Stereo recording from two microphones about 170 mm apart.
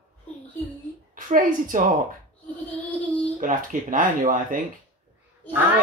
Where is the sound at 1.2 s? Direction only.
55° right (ahead or behind).